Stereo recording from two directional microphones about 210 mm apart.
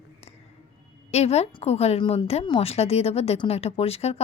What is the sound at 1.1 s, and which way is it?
A woman's voice, 30° left (ahead or behind).